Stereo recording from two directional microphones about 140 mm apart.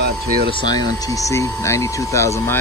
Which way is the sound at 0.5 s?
35° left (ahead or behind).